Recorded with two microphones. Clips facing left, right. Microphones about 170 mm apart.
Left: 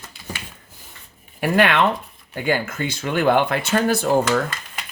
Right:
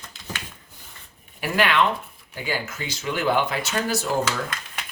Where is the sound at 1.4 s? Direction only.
50° left (ahead or behind).